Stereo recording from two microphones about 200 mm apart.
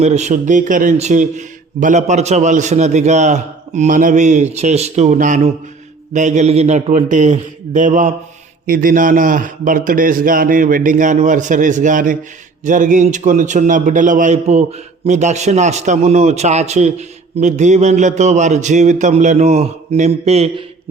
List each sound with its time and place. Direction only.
0.0 s a man's voice: 35° right (ahead or behind)